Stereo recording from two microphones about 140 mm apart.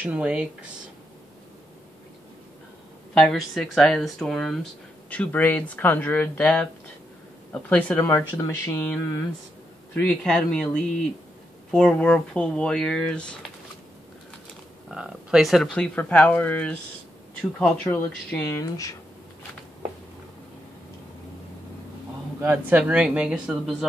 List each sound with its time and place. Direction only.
0.0 s speech: 10° right (ahead or behind)
3.2 s speech: 5° left (ahead or behind)
14.9 s speech: 5° right (ahead or behind); by 18.9 s 25° left (ahead or behind)
22.4 s speech: 10° right (ahead or behind)